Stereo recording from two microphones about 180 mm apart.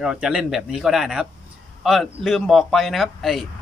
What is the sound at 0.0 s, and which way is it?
A man's voice, 5° right (ahead or behind).